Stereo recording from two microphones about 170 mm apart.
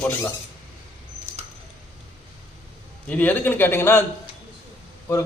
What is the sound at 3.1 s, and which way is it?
Speech, 10° left (ahead or behind).